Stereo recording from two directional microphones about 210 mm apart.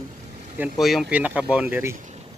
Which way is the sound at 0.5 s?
Centre (ahead or behind).